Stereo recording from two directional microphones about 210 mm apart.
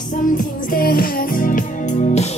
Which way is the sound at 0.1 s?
40° left (ahead or behind).